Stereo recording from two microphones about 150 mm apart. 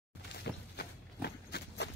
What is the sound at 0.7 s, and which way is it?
Horse, 90° left.